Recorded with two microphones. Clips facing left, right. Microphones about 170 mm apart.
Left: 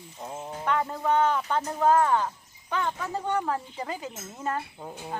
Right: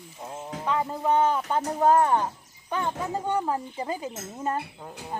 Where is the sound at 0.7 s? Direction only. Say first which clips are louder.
Right 2 dB; 15° right (ahead or behind).